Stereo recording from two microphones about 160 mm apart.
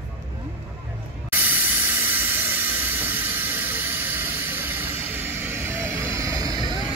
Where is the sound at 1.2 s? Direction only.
10° right (ahead or behind).